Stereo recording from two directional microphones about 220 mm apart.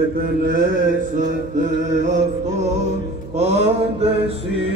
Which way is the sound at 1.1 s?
35° right (ahead or behind).